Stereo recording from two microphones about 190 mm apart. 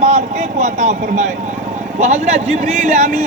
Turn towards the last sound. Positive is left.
turn(degrees=-40)  # may be behind; listen again after turning